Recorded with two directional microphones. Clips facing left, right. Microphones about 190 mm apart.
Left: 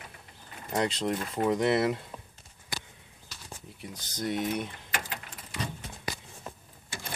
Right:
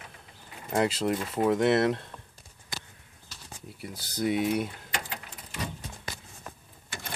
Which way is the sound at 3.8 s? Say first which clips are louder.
Right 5 dB; 10° right (ahead or behind).